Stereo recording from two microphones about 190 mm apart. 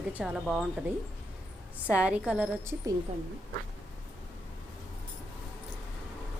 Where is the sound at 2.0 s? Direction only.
5° right (ahead or behind).